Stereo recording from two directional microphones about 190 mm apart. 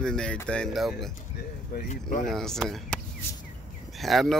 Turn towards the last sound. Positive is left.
turn(degrees=0)  # may be behind; listen again after turning